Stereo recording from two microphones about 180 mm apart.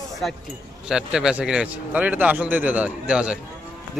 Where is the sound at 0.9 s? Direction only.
5° right (ahead or behind).